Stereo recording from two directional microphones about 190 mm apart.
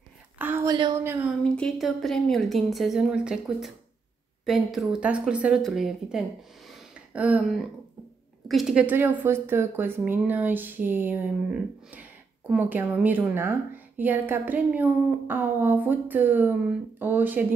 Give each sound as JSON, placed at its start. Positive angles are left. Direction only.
{"t": 0.4, "sound": "a sound", "side_deg": -10}
{"t": 0.7, "sound": "speech", "side_deg": -25}
{"t": 1.0, "sound": "speech", "side_deg": -10}
{"t": 1.4, "sound": "a woman's voice", "side_deg": 5}